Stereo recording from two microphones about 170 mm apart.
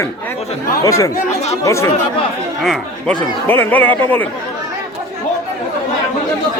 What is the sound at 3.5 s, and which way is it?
Speech, 10° left (ahead or behind).